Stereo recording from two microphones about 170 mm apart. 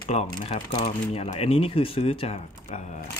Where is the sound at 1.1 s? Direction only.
35° left (ahead or behind).